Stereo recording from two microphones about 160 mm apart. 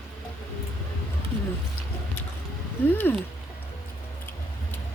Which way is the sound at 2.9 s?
10° left (ahead or behind).